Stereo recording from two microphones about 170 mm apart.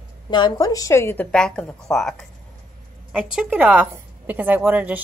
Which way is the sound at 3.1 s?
5° right (ahead or behind).